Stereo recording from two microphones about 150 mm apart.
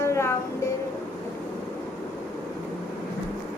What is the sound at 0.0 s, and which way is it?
Music, 20° left (ahead or behind).